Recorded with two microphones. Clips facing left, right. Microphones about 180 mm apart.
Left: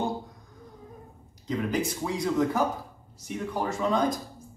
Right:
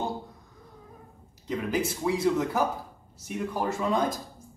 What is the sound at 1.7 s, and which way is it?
Speech, 5° right (ahead or behind).